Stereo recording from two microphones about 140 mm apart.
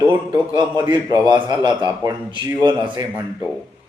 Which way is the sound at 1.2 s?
30° right (ahead or behind).